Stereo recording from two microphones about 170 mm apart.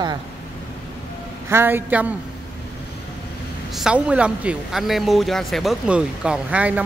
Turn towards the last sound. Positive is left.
turn(degrees=-10)  # may be behind; listen again after turning